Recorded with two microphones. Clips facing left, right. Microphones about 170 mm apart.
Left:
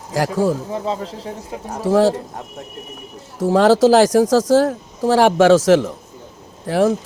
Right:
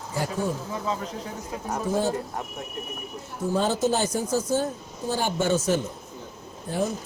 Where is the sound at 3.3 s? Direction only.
90° left.